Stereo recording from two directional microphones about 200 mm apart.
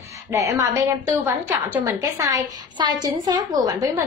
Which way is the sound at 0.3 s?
15° right (ahead or behind).